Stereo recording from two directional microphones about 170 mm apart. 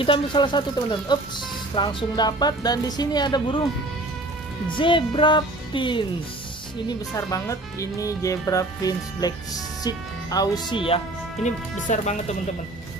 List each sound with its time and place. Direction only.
0.0 s speech: 30° left (ahead or behind)
4.7 s speech: 30° left (ahead or behind)
11.4 s speech: 45° left (ahead or behind)